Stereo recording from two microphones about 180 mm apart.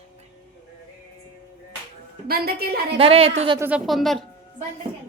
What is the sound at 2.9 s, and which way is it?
Speech, 35° right (ahead or behind).